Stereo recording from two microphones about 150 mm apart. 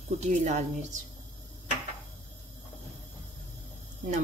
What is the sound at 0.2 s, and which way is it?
Speech, 55° right (ahead or behind).